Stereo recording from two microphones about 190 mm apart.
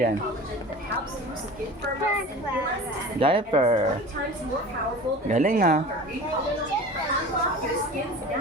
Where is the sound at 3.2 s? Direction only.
30° right (ahead or behind).